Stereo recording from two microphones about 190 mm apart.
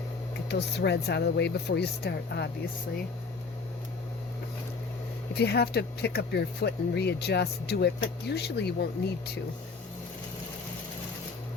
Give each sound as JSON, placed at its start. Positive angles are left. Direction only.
{"t": 0.4, "sound": "speech", "side_deg": 65}
{"t": 5.3, "sound": "speech", "side_deg": 60}